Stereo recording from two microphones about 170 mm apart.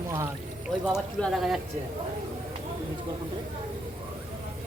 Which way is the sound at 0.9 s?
Centre (ahead or behind).